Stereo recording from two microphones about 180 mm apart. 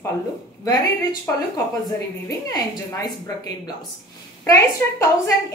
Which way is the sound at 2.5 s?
20° left (ahead or behind).